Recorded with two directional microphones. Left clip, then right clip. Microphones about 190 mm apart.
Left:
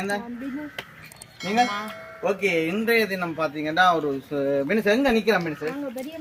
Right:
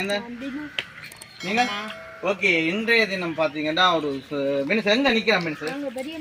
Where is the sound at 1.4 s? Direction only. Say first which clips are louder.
Left 1 dB; centre (ahead or behind).